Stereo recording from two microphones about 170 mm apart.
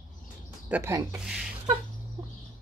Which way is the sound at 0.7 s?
15° right (ahead or behind).